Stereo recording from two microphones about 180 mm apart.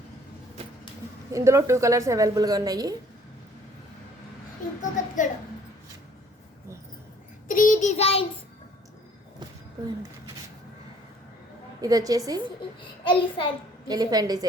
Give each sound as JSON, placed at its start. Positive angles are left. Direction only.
{"t": 1.3, "sound": "a woman's voice", "side_deg": -15}
{"t": 4.8, "sound": "a child's voice", "side_deg": 45}
{"t": 7.4, "sound": "child singing", "side_deg": 50}
{"t": 11.8, "sound": "a woman's voice", "side_deg": -20}
{"t": 13.1, "sound": "a child's voice", "side_deg": 30}
{"t": 13.8, "sound": "a woman's voice", "side_deg": -20}